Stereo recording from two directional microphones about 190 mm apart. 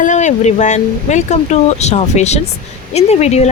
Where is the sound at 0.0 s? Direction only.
40° left (ahead or behind).